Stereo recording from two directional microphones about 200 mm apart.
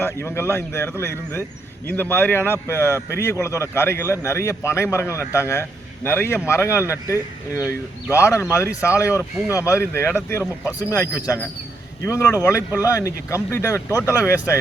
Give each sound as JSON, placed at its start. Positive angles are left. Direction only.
{"t": 0.0, "sound": "a man's voice", "side_deg": 10}